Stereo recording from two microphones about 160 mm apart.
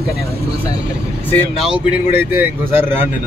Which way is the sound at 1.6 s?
5° right (ahead or behind).